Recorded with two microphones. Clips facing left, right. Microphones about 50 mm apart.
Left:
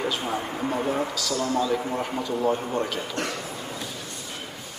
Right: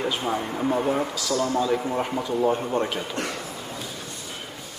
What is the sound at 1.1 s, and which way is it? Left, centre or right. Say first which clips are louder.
Speech: right 2 dB; right.